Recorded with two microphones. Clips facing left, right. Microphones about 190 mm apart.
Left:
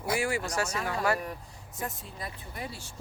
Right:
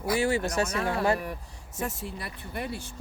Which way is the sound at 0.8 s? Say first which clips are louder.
Right 3 dB; 25° right (ahead or behind).